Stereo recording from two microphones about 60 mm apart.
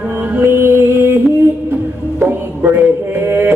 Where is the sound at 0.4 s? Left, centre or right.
Right.